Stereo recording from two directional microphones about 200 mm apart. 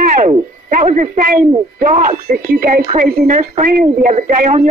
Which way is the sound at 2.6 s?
45° right (ahead or behind).